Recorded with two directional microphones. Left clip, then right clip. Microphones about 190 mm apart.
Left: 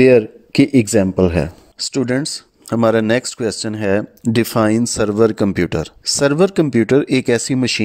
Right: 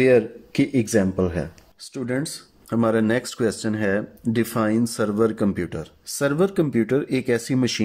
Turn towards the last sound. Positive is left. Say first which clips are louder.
# left 6 dB
turn(degrees=40)  # may be behind; listen again after turning